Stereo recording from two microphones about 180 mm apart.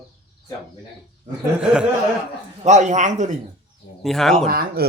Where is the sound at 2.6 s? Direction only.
40° right (ahead or behind).